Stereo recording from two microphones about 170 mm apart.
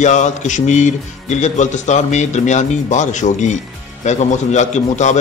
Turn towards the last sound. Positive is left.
turn(degrees=45)  # may be behind; listen again after turning